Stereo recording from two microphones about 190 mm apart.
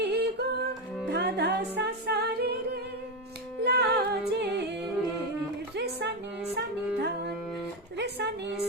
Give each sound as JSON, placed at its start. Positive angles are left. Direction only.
{"t": 0.0, "sound": "a capella", "side_deg": -60}
{"t": 1.1, "sound": "music", "side_deg": -60}
{"t": 5.7, "sound": "music", "side_deg": -60}
{"t": 7.9, "sound": "a sound", "side_deg": -60}